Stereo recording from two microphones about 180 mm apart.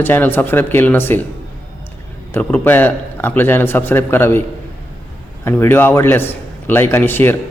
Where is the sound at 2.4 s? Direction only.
10° left (ahead or behind).